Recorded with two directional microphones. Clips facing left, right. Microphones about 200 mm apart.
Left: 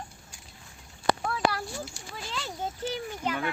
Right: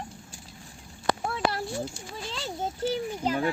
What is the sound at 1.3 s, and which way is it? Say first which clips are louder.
A child's voice: even; 25° right (ahead or behind).